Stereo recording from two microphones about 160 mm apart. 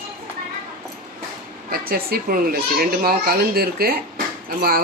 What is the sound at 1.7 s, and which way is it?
A child's voice, 70° right (ahead or behind).